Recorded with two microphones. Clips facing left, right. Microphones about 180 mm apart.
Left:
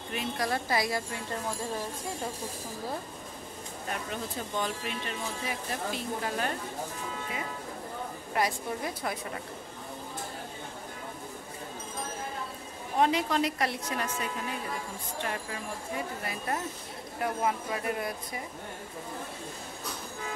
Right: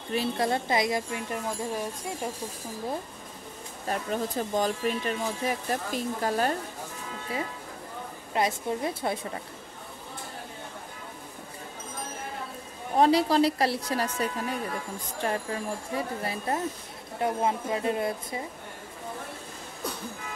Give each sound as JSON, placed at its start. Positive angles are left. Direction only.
{"t": 0.1, "sound": "speech", "side_deg": -30}
{"t": 3.9, "sound": "speech", "side_deg": -40}
{"t": 8.3, "sound": "speech", "side_deg": -25}
{"t": 12.9, "sound": "speech", "side_deg": -35}